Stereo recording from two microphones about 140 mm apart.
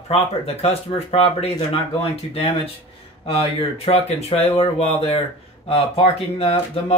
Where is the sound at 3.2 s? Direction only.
45° left (ahead or behind).